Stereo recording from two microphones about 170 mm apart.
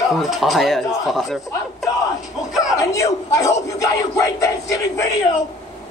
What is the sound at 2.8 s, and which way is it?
A man's voice, 20° left (ahead or behind).